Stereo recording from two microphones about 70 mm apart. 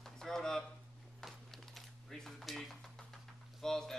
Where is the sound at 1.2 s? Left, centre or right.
Centre.